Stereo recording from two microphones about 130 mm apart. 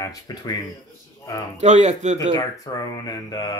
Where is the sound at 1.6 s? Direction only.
65° right (ahead or behind).